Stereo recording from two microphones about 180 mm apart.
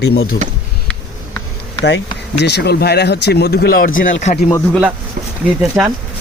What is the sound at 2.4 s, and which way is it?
Speech, 65° left (ahead or behind).